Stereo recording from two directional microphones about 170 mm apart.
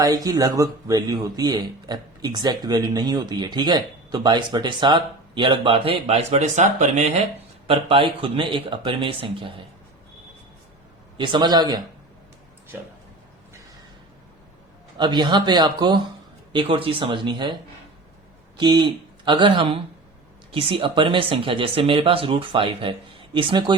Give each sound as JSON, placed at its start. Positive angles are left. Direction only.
{"t": 0.0, "sound": "speech", "side_deg": -20}
{"t": 7.7, "sound": "speech", "side_deg": -30}
{"t": 11.2, "sound": "speech", "side_deg": -25}
{"t": 14.9, "sound": "speech", "side_deg": -25}